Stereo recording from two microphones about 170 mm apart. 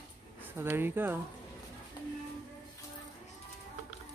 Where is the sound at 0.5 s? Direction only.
10° right (ahead or behind).